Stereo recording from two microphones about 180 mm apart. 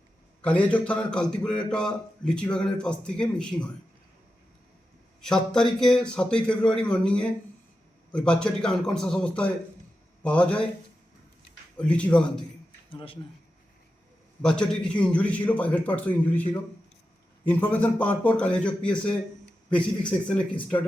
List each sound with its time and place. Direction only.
0.4 s a man's voice: 10° left (ahead or behind)
5.2 s a man's voice: 5° left (ahead or behind)
11.8 s a man's voice: 5° left (ahead or behind)
12.9 s speech: 30° left (ahead or behind)
14.4 s a man's voice: 5° left (ahead or behind)
17.4 s a man's voice: 10° left (ahead or behind)